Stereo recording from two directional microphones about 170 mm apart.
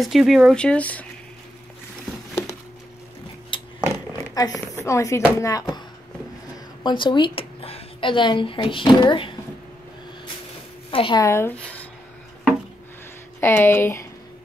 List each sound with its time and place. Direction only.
0.0 s speech: centre (ahead or behind)
3.5 s a sound: 30° left (ahead or behind)
4.8 s a woman's voice: 15° left (ahead or behind)
10.9 s a woman's voice: 30° left (ahead or behind)
11.2 s speech: 15° left (ahead or behind)
13.4 s speech: 15° left (ahead or behind)